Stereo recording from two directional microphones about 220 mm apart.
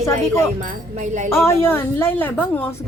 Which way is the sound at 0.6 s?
35° right (ahead or behind).